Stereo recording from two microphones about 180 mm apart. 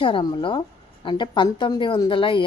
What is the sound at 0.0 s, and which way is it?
A woman's voice, 30° left (ahead or behind).